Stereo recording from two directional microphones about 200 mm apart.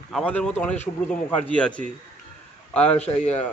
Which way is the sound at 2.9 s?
35° left (ahead or behind).